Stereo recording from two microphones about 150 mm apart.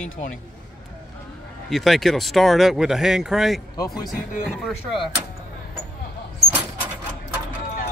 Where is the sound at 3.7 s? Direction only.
25° left (ahead or behind).